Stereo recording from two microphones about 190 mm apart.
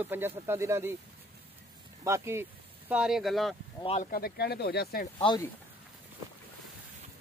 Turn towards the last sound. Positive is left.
turn(degrees=25)  # may be behind; listen again after turning